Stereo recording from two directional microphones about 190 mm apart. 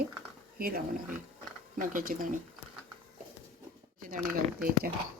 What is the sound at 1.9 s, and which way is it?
Speech, 45° right (ahead or behind).